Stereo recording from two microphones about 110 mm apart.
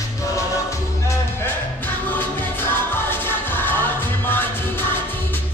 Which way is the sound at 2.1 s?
20° left (ahead or behind).